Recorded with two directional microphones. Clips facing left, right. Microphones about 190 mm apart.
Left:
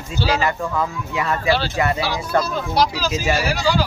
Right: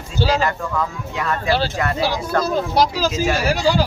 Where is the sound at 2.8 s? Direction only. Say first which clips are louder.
Even; 45° right (ahead or behind).